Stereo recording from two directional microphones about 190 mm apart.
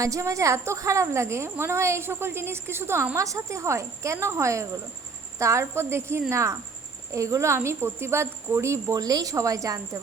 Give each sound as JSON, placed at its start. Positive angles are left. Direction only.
{"t": 0.0, "sound": "a woman's voice", "side_deg": -15}